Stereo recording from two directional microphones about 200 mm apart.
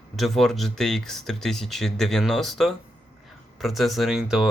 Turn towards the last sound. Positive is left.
turn(degrees=-5)  # may be behind; listen again after turning